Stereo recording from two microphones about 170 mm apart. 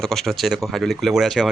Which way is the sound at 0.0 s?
Centre (ahead or behind).